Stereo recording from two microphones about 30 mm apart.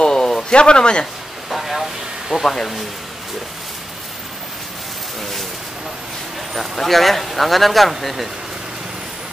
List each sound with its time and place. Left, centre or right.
0.0 s a sound: left
0.5 s speech: left
1.5 s vehicle: centre
2.4 s speech: centre
6.5 s speech: centre